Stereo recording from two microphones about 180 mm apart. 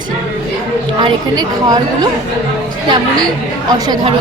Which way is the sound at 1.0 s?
20° right (ahead or behind).